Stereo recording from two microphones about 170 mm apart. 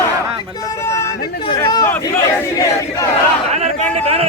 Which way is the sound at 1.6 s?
25° left (ahead or behind).